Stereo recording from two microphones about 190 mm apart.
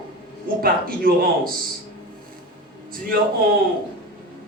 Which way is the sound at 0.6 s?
50° right (ahead or behind).